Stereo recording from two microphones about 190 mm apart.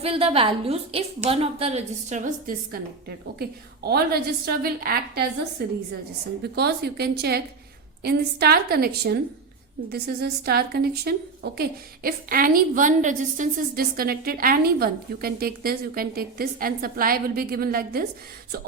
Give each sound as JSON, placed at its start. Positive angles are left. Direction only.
{"t": 0.0, "sound": "a woman's voice", "side_deg": -30}
{"t": 3.8, "sound": "a woman's voice", "side_deg": -55}
{"t": 6.4, "sound": "a woman's voice", "side_deg": -60}